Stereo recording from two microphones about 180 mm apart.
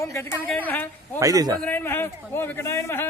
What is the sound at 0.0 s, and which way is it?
Speech, 15° left (ahead or behind).